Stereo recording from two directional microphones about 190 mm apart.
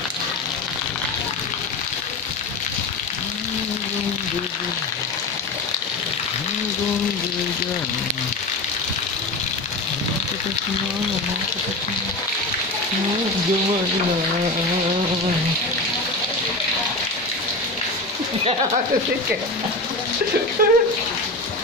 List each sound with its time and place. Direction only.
20.6 s speech: 45° right (ahead or behind)